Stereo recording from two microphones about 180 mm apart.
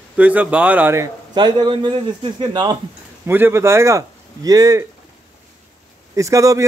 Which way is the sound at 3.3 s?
10° right (ahead or behind).